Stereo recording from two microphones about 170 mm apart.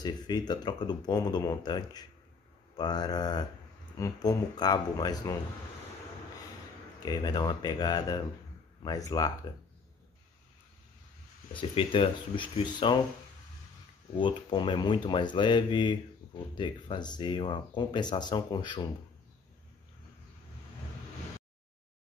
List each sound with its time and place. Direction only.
0.0 s speech: 25° left (ahead or behind)
7.0 s speech: 25° left (ahead or behind)
11.5 s speech: 30° left (ahead or behind)
14.1 s speech: 30° left (ahead or behind)